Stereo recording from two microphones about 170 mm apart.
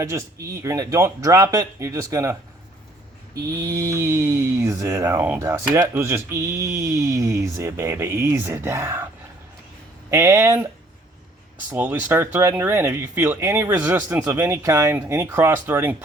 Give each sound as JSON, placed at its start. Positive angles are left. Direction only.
{"t": 0.0, "sound": "speech", "side_deg": -20}
{"t": 3.3, "sound": "speech", "side_deg": -20}
{"t": 10.1, "sound": "speech", "side_deg": -20}
{"t": 11.7, "sound": "speech", "side_deg": -10}